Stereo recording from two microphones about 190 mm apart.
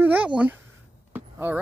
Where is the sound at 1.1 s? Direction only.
10° right (ahead or behind).